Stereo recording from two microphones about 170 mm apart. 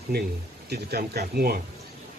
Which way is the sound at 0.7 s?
70° right (ahead or behind).